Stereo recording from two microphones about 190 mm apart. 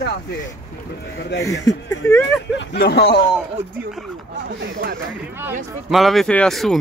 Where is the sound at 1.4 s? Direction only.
20° left (ahead or behind).